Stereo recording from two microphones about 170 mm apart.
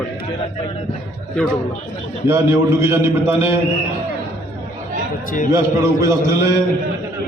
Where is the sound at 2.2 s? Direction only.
15° right (ahead or behind).